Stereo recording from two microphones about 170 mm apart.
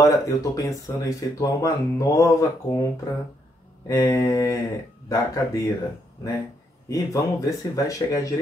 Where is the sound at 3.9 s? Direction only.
20° left (ahead or behind).